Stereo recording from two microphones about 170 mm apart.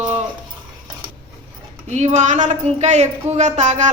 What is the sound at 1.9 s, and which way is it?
Speech, 45° right (ahead or behind).